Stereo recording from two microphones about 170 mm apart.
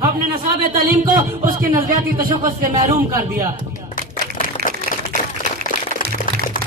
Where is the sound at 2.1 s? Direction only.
55° right (ahead or behind).